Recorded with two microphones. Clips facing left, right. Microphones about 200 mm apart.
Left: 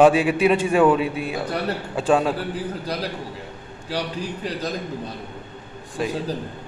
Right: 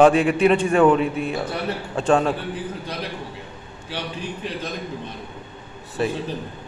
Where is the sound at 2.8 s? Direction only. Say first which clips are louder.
Left 3 dB; 35° left (ahead or behind).